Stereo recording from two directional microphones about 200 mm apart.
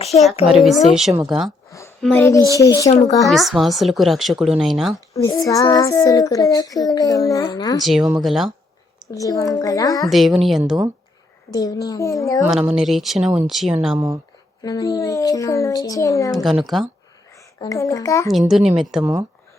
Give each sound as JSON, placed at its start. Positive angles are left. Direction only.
{"t": 0.4, "sound": "speech", "side_deg": 0}
{"t": 2.0, "sound": "child singing", "side_deg": 5}
{"t": 3.2, "sound": "speech", "side_deg": 0}
{"t": 4.9, "sound": "child singing", "side_deg": 15}
{"t": 7.8, "sound": "speech", "side_deg": 0}
{"t": 9.1, "sound": "child singing", "side_deg": 15}
{"t": 10.1, "sound": "speech", "side_deg": 0}
{"t": 11.5, "sound": "child singing", "side_deg": 20}
{"t": 12.4, "sound": "speech", "side_deg": -5}
{"t": 14.6, "sound": "child singing", "side_deg": 20}
{"t": 16.3, "sound": "speech", "side_deg": 0}
{"t": 17.6, "sound": "child singing", "side_deg": 15}
{"t": 18.3, "sound": "speech", "side_deg": 0}